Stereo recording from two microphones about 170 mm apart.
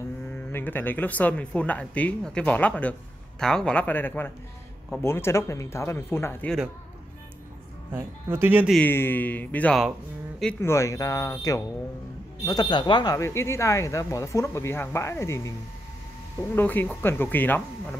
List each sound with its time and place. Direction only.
0.3 s speech: 10° left (ahead or behind)
7.9 s speech: 15° right (ahead or behind)
8.7 s speech: 10° left (ahead or behind)
16.5 s speech: 10° left (ahead or behind)